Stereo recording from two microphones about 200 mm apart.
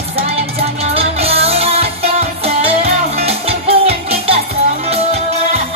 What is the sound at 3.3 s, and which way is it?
Music, 30° right (ahead or behind).